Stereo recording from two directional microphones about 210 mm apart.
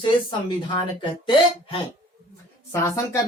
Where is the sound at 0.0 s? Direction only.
20° left (ahead or behind).